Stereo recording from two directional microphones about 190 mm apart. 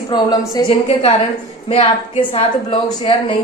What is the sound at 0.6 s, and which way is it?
A woman's voice, 30° left (ahead or behind).